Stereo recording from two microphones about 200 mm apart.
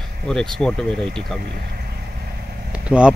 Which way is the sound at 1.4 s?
50° right (ahead or behind).